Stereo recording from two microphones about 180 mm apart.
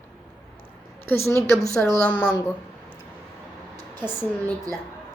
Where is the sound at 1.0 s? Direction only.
15° left (ahead or behind).